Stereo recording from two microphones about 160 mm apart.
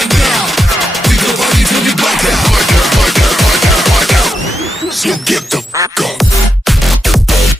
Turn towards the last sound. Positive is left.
turn(degrees=0)  # may be behind; listen again after turning